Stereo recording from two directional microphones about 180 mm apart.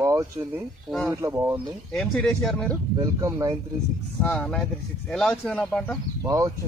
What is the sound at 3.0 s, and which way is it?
Speech, 15° right (ahead or behind).